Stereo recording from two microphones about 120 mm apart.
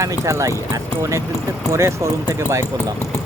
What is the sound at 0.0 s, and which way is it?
Speech, 25° right (ahead or behind).